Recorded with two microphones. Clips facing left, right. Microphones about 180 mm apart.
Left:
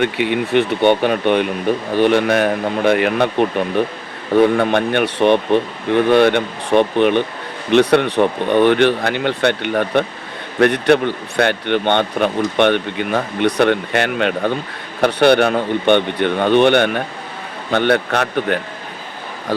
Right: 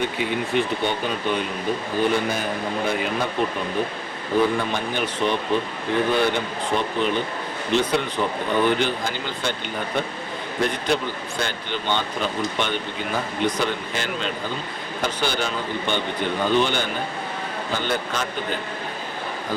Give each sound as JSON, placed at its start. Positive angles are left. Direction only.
{"t": 0.0, "sound": "speech", "side_deg": 70}
{"t": 4.4, "sound": "a man's voice", "side_deg": 65}